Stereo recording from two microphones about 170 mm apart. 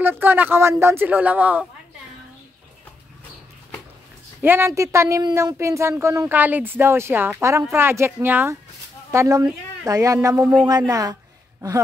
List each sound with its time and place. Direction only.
0.2 s speech: 10° right (ahead or behind)
4.4 s speech: 15° right (ahead or behind)